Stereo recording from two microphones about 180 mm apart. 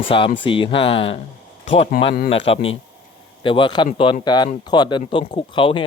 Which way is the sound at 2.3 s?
30° left (ahead or behind).